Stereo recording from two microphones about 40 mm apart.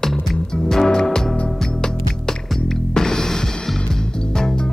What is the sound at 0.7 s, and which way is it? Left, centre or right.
Music, centre.